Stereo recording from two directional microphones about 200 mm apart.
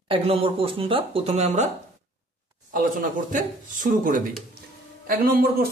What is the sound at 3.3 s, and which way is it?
A man's voice, 40° right (ahead or behind).